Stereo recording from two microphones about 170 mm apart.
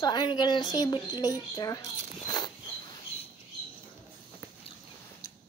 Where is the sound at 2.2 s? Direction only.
25° left (ahead or behind).